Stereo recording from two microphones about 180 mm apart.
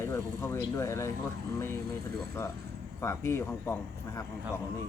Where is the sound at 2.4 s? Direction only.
15° left (ahead or behind).